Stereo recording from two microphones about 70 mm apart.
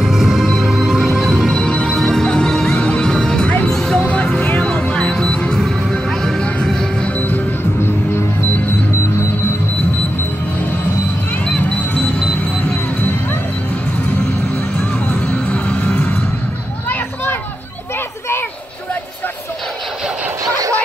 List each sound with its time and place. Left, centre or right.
0.0 s music: centre
1.6 s music: centre
7.2 s music: left
11.4 s music: centre
15.2 s music: centre
16.9 s a sound: left
20.4 s vehicle: right